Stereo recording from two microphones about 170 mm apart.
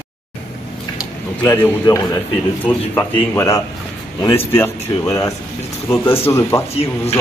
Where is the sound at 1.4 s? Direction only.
15° left (ahead or behind).